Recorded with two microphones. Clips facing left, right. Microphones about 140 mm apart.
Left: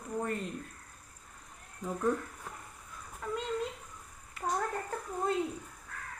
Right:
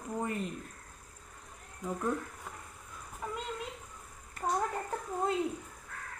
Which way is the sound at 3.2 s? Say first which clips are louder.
Left 3 dB; 10° right (ahead or behind).